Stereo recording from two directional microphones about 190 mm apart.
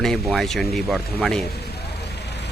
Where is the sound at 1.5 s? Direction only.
60° left (ahead or behind).